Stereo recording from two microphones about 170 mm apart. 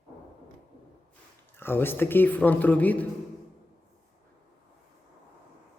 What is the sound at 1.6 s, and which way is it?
Speech, 15° left (ahead or behind).